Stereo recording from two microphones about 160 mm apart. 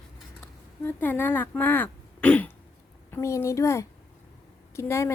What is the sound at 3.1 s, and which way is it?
A child's voice, 15° left (ahead or behind).